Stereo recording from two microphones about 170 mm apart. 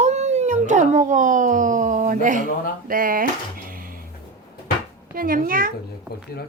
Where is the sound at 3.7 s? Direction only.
55° right (ahead or behind).